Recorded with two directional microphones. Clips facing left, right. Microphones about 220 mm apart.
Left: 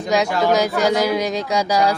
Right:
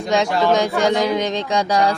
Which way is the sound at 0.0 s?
5° left (ahead or behind).